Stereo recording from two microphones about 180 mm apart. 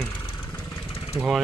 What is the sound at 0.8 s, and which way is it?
Lawn mower, 30° left (ahead or behind).